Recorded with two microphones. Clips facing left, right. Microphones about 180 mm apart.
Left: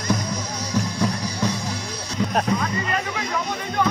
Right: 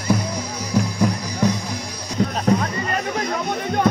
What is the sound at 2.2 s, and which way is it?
Music, 40° right (ahead or behind).